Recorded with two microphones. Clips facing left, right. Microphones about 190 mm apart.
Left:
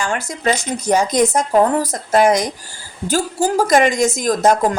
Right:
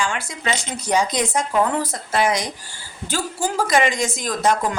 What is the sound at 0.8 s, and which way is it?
A woman's voice, 45° left (ahead or behind).